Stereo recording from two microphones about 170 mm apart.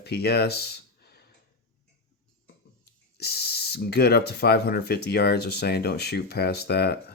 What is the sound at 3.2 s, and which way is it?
Speech, 70° left (ahead or behind).